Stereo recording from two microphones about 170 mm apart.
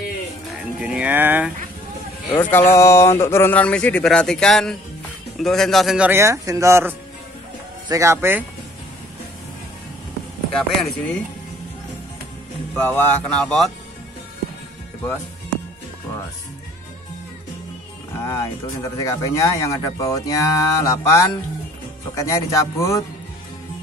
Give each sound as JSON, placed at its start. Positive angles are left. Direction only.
{"t": 0.5, "sound": "music", "side_deg": -5}
{"t": 2.7, "sound": "speech", "side_deg": 15}
{"t": 10.5, "sound": "speech", "side_deg": 5}
{"t": 12.7, "sound": "speech", "side_deg": 10}
{"t": 18.2, "sound": "speech", "side_deg": 15}